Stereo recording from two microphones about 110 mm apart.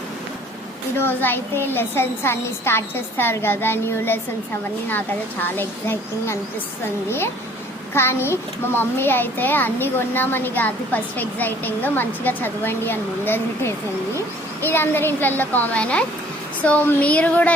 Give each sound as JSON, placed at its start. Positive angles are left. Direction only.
{"t": 0.9, "sound": "a child's voice", "side_deg": 20}
{"t": 7.9, "sound": "a child's voice", "side_deg": 20}